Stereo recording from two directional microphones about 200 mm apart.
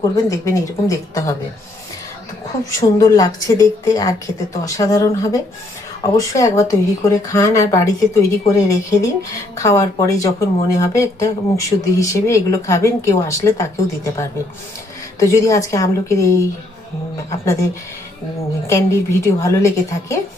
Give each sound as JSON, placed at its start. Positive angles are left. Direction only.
{"t": 0.3, "sound": "speech", "side_deg": 15}
{"t": 2.6, "sound": "speech", "side_deg": 15}
{"t": 18.7, "sound": "speech", "side_deg": 15}